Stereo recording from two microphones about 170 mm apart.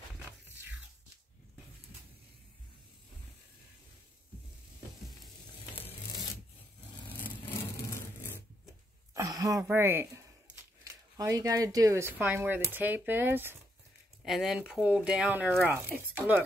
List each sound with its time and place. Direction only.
0.2 s music: 10° right (ahead or behind)
7.1 s a sound: 10° left (ahead or behind)
9.1 s speech: 20° right (ahead or behind)
14.2 s speech: centre (ahead or behind)